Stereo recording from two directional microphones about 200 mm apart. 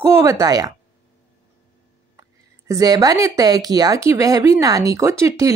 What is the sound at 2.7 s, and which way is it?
Speech, 15° right (ahead or behind).